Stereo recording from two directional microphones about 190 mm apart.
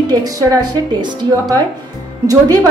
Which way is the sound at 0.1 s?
20° right (ahead or behind).